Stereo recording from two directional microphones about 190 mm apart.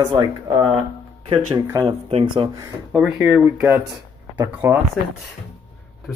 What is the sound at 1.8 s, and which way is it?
Speech, 30° right (ahead or behind).